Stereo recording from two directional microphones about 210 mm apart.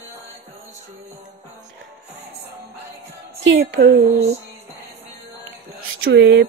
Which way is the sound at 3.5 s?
55° right (ahead or behind).